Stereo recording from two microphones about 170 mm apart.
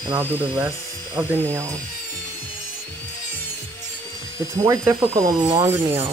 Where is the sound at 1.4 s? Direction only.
15° right (ahead or behind).